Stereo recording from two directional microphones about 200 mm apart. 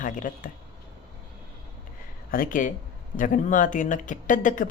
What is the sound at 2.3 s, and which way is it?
Speech, 45° left (ahead or behind).